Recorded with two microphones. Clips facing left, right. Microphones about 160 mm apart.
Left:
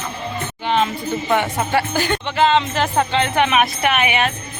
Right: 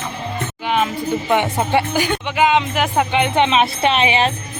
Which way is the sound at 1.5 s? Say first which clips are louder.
Right 2 dB; 20° right (ahead or behind).